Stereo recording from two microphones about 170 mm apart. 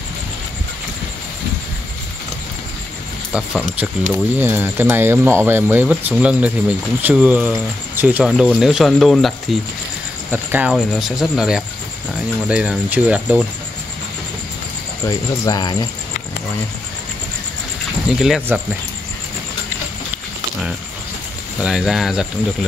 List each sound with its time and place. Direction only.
3.3 s speech: 5° right (ahead or behind)
15.0 s speech: 20° left (ahead or behind)
18.1 s speech: 5° right (ahead or behind)
21.5 s speech: 5° right (ahead or behind)